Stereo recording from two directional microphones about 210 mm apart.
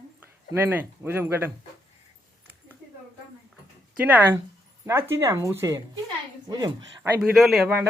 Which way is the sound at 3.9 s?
5° right (ahead or behind).